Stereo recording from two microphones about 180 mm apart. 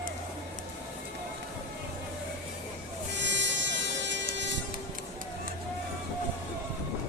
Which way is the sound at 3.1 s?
85° right.